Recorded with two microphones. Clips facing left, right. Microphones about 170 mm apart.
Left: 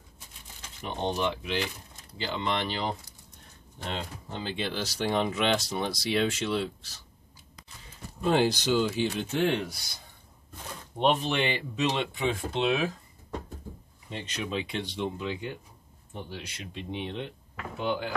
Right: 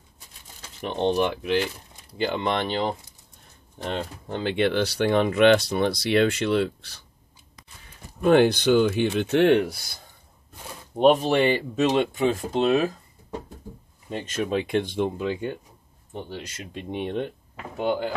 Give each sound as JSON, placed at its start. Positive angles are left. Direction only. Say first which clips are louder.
{"t": 0.8, "sound": "speech", "louder": "right 7 dB", "side_deg": -65}
{"t": 8.2, "sound": "speech", "louder": "right 7 dB", "side_deg": -60}
{"t": 11.0, "sound": "speech", "louder": "right 8 dB", "side_deg": -45}
{"t": 14.1, "sound": "speech", "louder": "right 7 dB", "side_deg": -45}
{"t": 17.7, "sound": "speech", "louder": "right 5 dB", "side_deg": -40}